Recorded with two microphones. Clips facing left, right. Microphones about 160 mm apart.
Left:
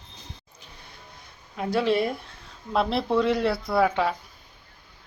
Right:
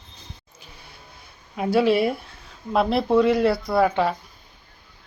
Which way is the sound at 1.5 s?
5° right (ahead or behind).